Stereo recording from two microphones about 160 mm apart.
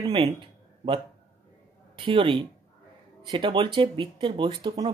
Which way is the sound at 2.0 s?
35° right (ahead or behind).